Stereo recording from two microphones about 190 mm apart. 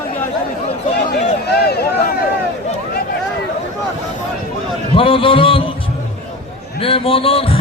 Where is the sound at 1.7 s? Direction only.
55° left (ahead or behind).